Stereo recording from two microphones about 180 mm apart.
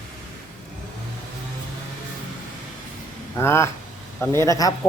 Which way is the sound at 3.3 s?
15° left (ahead or behind).